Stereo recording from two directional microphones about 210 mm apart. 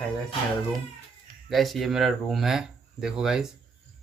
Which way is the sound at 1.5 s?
Centre (ahead or behind).